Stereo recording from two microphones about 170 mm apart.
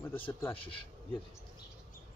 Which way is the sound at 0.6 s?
30° left (ahead or behind).